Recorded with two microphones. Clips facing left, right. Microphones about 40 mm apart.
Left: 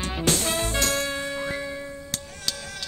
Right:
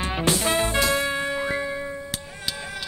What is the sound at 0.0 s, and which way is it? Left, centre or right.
Music, centre.